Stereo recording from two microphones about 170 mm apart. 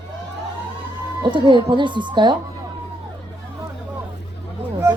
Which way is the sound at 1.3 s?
30° right (ahead or behind).